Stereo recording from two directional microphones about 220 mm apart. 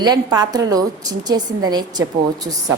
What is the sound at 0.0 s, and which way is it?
A woman's voice, 20° right (ahead or behind).